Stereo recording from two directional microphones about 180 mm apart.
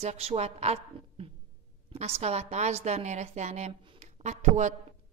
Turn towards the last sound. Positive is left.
turn(degrees=-40)  # may be behind; listen again after turning